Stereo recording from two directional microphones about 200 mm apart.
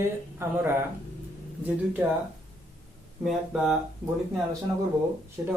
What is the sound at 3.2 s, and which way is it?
Speech, centre (ahead or behind).